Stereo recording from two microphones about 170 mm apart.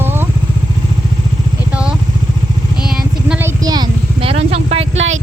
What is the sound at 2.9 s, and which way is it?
Vehicle, 10° right (ahead or behind).